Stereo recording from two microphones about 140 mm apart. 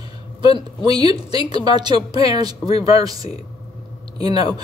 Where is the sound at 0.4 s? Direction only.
30° right (ahead or behind).